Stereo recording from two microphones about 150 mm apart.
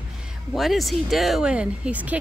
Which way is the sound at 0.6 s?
Centre (ahead or behind).